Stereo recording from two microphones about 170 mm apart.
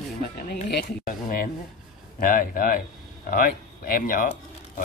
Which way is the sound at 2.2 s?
55° left (ahead or behind).